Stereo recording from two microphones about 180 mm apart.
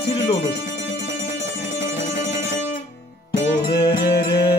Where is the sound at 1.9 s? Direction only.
45° left (ahead or behind).